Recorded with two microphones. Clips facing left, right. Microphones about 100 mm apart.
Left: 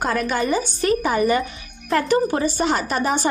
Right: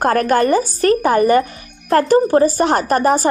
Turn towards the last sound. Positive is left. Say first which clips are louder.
# right 7 dB
turn(degrees=-40)  # may be behind; listen again after turning